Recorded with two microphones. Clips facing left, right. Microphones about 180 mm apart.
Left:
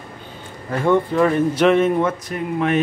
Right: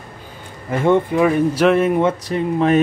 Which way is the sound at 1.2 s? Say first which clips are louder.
Right 1 dB; 5° right (ahead or behind).